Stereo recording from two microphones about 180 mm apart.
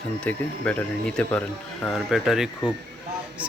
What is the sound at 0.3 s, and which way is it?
Speech, 10° left (ahead or behind).